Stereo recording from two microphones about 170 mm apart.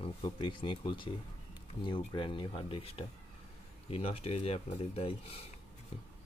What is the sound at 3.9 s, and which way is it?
Speech, 35° left (ahead or behind).